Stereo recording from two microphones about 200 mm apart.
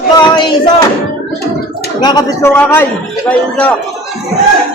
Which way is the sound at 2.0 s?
20° left (ahead or behind).